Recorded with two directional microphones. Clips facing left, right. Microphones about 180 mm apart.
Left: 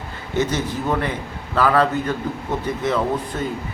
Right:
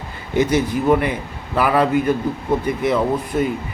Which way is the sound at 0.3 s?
10° right (ahead or behind).